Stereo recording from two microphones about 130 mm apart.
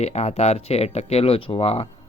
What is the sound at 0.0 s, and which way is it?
Speech, 55° left (ahead or behind).